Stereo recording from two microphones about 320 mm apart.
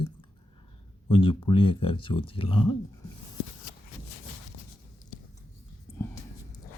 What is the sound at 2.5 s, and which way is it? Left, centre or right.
Speech, left.